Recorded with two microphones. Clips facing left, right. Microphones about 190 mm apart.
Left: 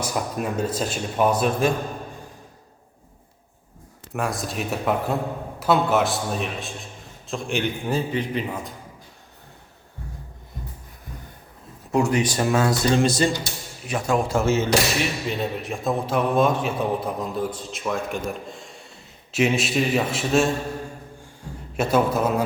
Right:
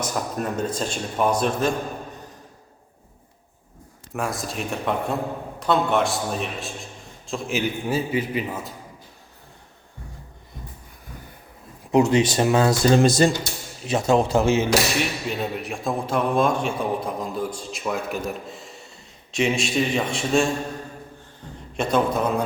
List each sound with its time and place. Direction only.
0.0 s a man's voice: 10° left (ahead or behind)
4.1 s a man's voice: centre (ahead or behind)
11.9 s speech: 20° right (ahead or behind)
12.9 s speech: 40° right (ahead or behind)
13.8 s speech: 25° right (ahead or behind)
15.3 s a man's voice: centre (ahead or behind)
21.4 s a sound: 10° left (ahead or behind)
21.8 s a man's voice: 5° left (ahead or behind)